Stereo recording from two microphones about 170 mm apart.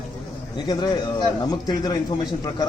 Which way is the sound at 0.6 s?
25° left (ahead or behind).